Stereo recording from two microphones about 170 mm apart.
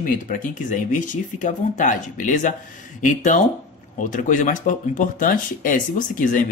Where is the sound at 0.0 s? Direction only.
55° left (ahead or behind).